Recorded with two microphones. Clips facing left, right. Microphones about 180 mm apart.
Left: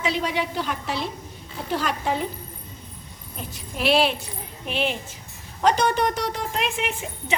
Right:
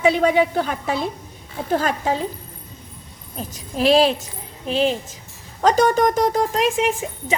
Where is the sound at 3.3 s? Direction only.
40° right (ahead or behind).